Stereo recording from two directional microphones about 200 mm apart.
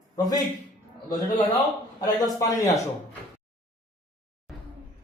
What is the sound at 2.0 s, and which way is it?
Speech, 20° left (ahead or behind).